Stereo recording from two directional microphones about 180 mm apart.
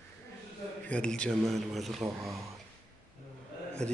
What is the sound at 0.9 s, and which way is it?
Speech, 5° left (ahead or behind).